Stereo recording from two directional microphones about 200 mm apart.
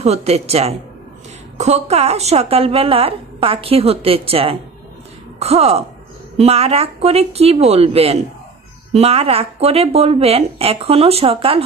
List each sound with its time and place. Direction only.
0.0 s a woman's voice: 30° right (ahead or behind)